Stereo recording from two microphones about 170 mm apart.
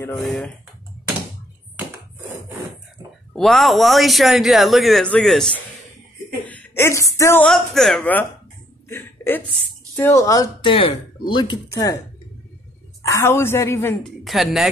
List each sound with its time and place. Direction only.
0.2 s speech: centre (ahead or behind)
3.3 s a woman's voice: centre (ahead or behind)
7.4 s a woman's voice: centre (ahead or behind); by 12.0 s 20° left (ahead or behind)
13.0 s a woman's voice: 15° left (ahead or behind)
14.0 s speech: centre (ahead or behind)